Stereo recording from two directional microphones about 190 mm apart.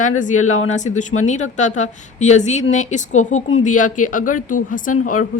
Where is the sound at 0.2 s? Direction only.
40° left (ahead or behind).